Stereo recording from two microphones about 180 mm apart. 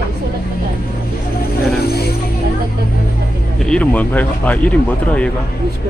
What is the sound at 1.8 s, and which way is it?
Speech, 60° left (ahead or behind).